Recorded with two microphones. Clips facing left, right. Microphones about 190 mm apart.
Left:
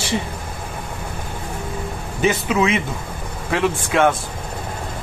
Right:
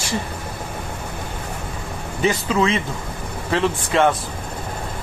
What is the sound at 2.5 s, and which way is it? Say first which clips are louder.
A man's voice: left 1 dB; 15° left (ahead or behind).